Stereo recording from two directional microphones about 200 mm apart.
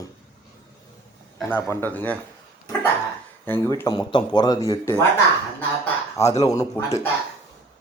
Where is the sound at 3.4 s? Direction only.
10° left (ahead or behind).